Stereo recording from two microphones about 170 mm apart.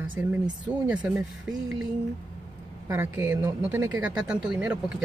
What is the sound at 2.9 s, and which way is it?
Speech, 15° right (ahead or behind).